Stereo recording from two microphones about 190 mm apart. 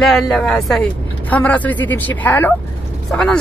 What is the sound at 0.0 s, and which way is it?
Speech, centre (ahead or behind).